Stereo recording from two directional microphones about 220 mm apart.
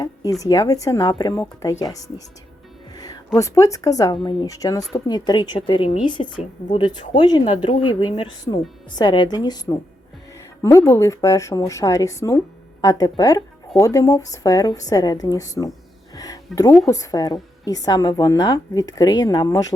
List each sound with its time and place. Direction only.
0.0 s a woman's voice: 15° left (ahead or behind)
2.9 s music: 15° left (ahead or behind)
3.3 s a woman's voice: 15° left (ahead or behind)
16.1 s music: 15° left (ahead or behind)
16.6 s a woman's voice: 15° left (ahead or behind)